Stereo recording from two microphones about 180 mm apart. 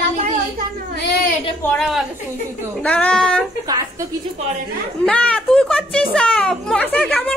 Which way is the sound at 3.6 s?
20° right (ahead or behind).